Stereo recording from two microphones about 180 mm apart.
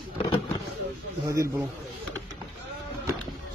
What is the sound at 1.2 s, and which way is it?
Speech, 15° right (ahead or behind).